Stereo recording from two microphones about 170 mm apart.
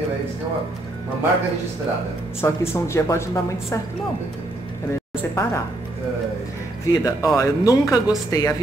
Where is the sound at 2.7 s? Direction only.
15° left (ahead or behind).